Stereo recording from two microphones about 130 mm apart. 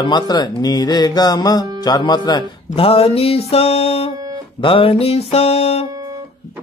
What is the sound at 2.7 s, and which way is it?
Speech, 45° left (ahead or behind).